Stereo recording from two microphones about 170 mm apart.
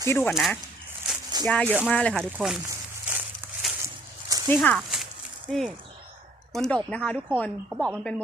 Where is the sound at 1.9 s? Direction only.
5° left (ahead or behind).